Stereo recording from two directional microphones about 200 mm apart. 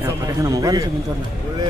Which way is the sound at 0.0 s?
15° right (ahead or behind).